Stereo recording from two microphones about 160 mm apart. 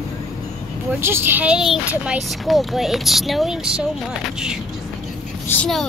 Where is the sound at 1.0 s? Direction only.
15° right (ahead or behind).